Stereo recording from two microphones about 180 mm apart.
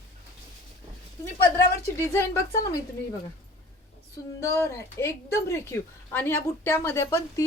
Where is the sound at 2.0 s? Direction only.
15° left (ahead or behind).